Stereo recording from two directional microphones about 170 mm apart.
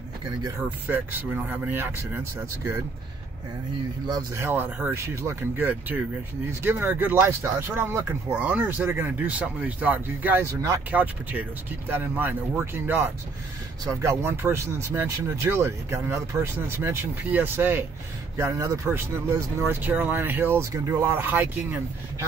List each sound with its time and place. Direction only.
0.4 s speech: 15° right (ahead or behind)
4.1 s speech: 15° right (ahead or behind)